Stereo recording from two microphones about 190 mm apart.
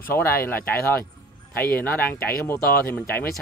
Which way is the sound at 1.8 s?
10° left (ahead or behind).